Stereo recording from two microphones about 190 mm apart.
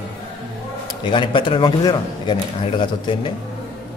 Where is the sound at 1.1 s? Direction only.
25° left (ahead or behind).